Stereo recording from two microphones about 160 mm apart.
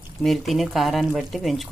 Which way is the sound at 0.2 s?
Centre (ahead or behind).